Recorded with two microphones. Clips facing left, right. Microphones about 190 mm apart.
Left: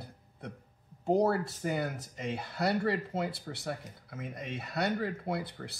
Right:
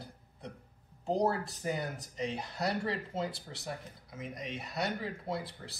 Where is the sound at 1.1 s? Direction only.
55° left (ahead or behind).